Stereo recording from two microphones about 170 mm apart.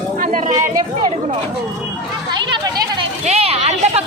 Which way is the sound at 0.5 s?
20° right (ahead or behind).